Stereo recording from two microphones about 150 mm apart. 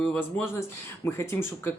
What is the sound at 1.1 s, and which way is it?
Speech, 15° left (ahead or behind).